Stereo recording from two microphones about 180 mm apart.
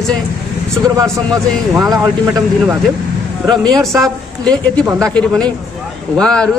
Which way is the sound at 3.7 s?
Centre (ahead or behind).